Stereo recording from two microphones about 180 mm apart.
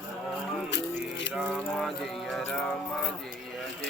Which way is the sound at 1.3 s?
5° left (ahead or behind).